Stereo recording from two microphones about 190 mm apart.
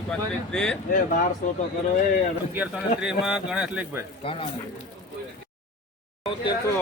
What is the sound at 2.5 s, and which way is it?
Speech, 5° right (ahead or behind).